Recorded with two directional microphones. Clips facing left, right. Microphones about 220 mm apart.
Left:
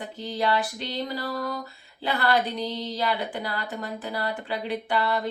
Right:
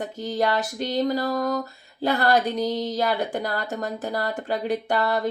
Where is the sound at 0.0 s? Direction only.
45° right (ahead or behind).